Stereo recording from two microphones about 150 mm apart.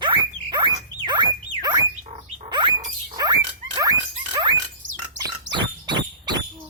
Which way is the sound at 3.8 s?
25° right (ahead or behind).